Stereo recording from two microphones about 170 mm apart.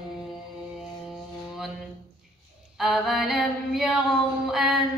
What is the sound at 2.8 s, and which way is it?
Female singing, centre (ahead or behind).